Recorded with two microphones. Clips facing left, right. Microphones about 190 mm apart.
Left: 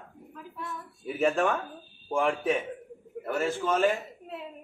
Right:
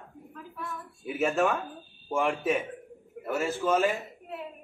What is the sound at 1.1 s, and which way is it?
Speech, 5° right (ahead or behind).